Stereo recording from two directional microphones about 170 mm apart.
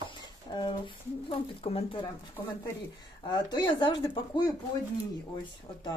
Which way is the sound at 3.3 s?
25° left (ahead or behind).